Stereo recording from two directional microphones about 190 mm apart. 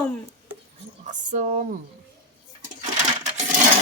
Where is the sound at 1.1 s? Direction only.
40° right (ahead or behind).